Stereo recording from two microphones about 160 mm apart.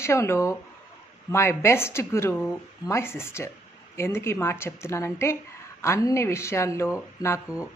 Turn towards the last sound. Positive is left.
turn(degrees=20)  # may be behind; listen again after turning